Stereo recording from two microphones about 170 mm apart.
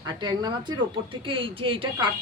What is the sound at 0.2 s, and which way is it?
A woman's voice, 25° right (ahead or behind).